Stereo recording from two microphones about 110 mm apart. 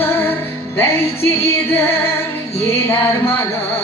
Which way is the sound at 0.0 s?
20° left (ahead or behind).